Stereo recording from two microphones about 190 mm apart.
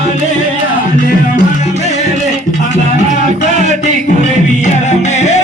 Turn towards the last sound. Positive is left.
turn(degrees=35)  # may be behind; listen again after turning